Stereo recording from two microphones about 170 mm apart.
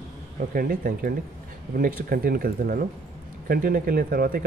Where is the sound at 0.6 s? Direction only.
60° right (ahead or behind).